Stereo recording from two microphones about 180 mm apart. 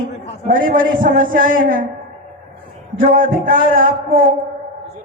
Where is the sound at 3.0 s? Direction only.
50° right (ahead or behind).